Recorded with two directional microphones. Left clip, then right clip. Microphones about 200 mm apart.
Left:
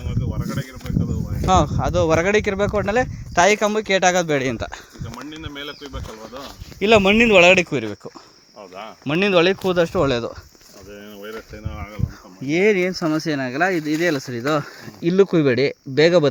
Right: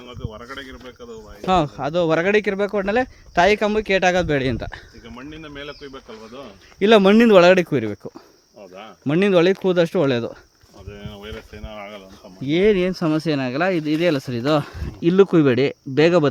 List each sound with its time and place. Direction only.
0.1 s speech: 5° left (ahead or behind)
1.5 s speech: 15° right (ahead or behind)
5.3 s speech: 10° left (ahead or behind)
6.8 s speech: 35° right (ahead or behind)
9.1 s speech: 35° right (ahead or behind)
12.5 s speech: 20° right (ahead or behind)
15.1 s speech: 15° right (ahead or behind)